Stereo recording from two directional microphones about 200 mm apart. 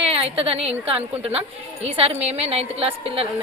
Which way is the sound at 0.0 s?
30° right (ahead or behind).